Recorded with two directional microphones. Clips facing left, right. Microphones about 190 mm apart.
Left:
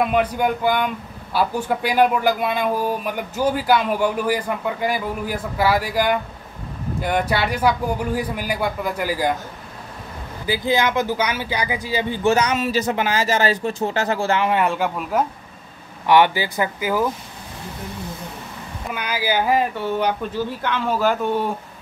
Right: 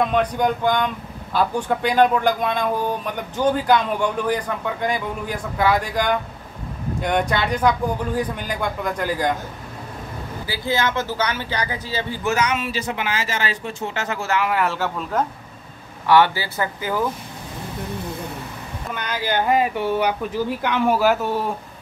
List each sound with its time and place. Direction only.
0.0 s a man's voice: 5° left (ahead or behind)
10.4 s a man's voice: 20° left (ahead or behind)
12.2 s a man's voice: 30° left (ahead or behind); by 17.0 s 10° left (ahead or behind)
18.9 s speech: 5° left (ahead or behind)
19.7 s speech: 10° right (ahead or behind)